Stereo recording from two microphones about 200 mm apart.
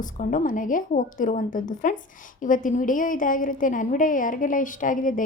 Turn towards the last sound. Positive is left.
turn(degrees=40)  # may be behind; listen again after turning